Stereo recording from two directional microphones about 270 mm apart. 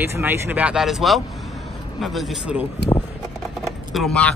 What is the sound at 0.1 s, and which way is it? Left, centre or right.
Speech, centre.